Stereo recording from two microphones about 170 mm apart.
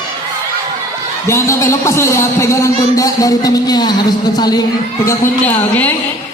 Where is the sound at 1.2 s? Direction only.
15° left (ahead or behind).